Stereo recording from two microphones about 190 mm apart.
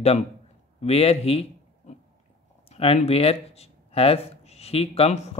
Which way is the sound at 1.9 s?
35° left (ahead or behind).